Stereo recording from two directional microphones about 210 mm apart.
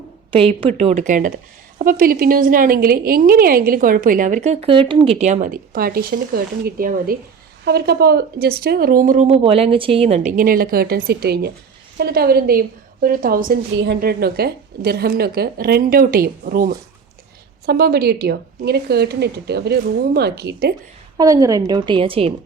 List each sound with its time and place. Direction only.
0.3 s a woman's voice: 25° right (ahead or behind); by 13.6 s 40° right (ahead or behind)
13.7 s a woman's voice: 55° right (ahead or behind)
21.2 s a woman's voice: 15° right (ahead or behind)